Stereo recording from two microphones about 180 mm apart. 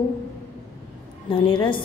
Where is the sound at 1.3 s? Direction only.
30° left (ahead or behind).